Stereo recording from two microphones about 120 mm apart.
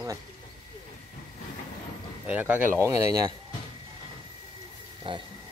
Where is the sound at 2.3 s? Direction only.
15° right (ahead or behind).